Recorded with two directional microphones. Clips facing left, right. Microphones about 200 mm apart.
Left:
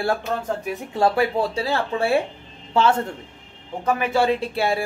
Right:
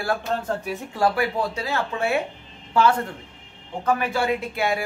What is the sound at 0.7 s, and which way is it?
Speech, 20° left (ahead or behind).